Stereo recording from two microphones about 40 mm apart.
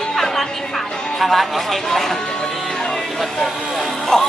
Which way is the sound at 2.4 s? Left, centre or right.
Centre.